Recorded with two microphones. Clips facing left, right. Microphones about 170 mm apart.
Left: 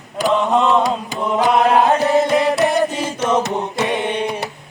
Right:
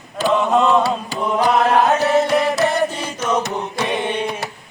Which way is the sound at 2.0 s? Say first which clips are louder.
Left 1 dB; 25° left (ahead or behind).